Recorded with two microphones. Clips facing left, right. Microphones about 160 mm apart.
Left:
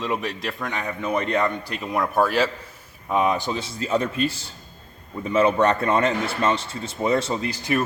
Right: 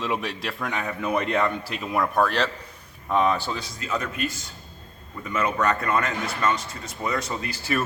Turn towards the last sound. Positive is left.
turn(degrees=20)  # may be behind; listen again after turning